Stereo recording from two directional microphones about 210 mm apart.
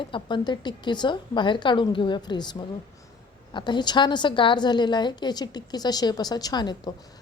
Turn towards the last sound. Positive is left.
turn(degrees=20)  # may be behind; listen again after turning